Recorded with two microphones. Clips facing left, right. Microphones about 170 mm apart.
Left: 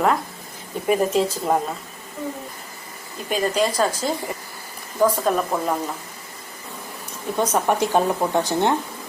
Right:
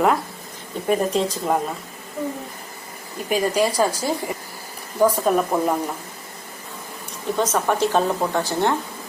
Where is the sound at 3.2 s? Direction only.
10° right (ahead or behind).